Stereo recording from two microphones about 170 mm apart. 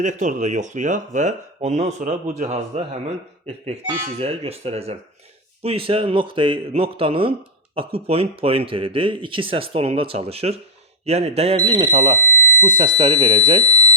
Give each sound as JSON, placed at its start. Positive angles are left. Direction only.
{"t": 0.0, "sound": "speech", "side_deg": -45}
{"t": 4.2, "sound": "speech", "side_deg": -35}
{"t": 11.7, "sound": "speech", "side_deg": -25}
{"t": 12.4, "sound": "fire alarm", "side_deg": 15}
{"t": 12.6, "sound": "speech", "side_deg": -25}